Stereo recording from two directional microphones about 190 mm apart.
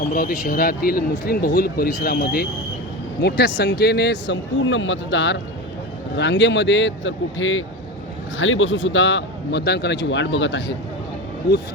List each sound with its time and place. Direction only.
0.1 s speech: 45° left (ahead or behind); by 10.8 s 70° left (ahead or behind)